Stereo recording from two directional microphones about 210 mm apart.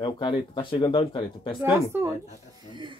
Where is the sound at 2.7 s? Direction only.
20° right (ahead or behind).